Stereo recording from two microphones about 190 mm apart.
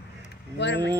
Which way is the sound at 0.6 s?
65° left (ahead or behind).